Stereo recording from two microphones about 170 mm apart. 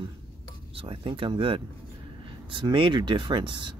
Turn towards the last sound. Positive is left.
turn(degrees=-30)  # may be behind; listen again after turning